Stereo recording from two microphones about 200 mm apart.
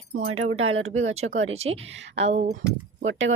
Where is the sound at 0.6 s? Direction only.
90° right.